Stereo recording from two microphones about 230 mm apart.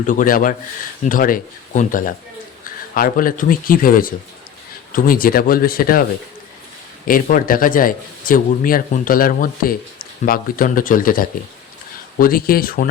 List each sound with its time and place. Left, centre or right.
0.0 s a man's voice: left
7.1 s a man's voice: left